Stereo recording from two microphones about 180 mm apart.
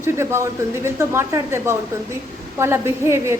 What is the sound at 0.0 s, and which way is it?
A woman's voice, 15° right (ahead or behind).